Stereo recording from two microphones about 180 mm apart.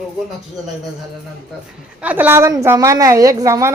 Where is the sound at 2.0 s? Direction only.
10° right (ahead or behind).